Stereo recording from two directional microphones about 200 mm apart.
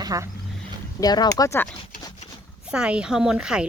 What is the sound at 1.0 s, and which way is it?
Speech, 20° left (ahead or behind).